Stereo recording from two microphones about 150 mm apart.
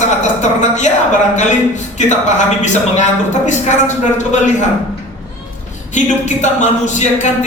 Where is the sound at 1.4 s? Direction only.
55° left (ahead or behind).